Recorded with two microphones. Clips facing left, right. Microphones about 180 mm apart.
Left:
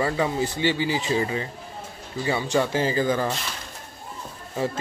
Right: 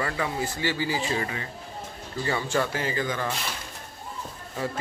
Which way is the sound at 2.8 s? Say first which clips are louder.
Left 6 dB; 30° left (ahead or behind).